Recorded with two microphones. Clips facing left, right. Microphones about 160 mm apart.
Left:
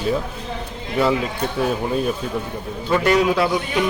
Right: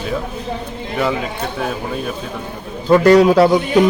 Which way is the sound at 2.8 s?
40° right (ahead or behind).